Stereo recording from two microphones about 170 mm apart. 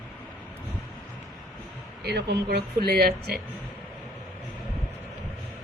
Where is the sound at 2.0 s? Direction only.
75° right (ahead or behind).